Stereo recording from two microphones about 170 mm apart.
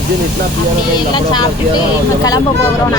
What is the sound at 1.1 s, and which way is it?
Speech, 25° left (ahead or behind).